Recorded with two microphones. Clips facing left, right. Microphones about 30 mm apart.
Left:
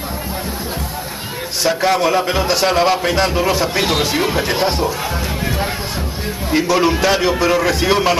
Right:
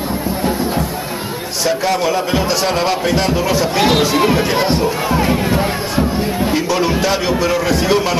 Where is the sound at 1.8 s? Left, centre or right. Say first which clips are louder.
Left 4 dB; centre.